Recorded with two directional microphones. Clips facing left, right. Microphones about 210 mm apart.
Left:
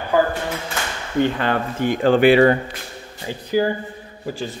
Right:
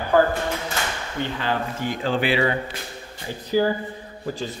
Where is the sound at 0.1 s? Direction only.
15° left (ahead or behind).